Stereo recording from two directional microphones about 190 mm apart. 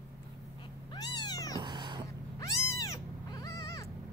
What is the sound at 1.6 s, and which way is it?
Cat, 25° right (ahead or behind).